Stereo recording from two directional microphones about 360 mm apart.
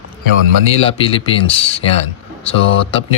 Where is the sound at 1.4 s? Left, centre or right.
Centre.